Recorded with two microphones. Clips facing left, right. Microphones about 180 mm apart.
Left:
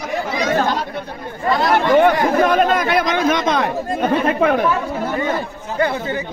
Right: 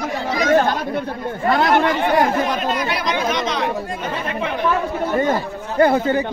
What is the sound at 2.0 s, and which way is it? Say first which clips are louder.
Chatter: left 4 dB; 55° left (ahead or behind).